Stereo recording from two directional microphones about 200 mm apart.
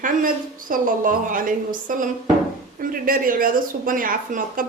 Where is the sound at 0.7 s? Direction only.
40° right (ahead or behind).